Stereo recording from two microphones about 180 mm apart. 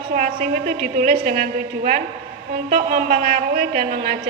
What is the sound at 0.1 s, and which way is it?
A woman's voice, 50° right (ahead or behind).